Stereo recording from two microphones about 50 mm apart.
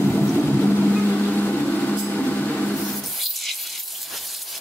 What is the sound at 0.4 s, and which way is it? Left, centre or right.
Vehicle, left.